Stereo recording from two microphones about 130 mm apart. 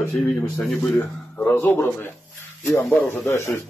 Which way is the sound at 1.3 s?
15° left (ahead or behind).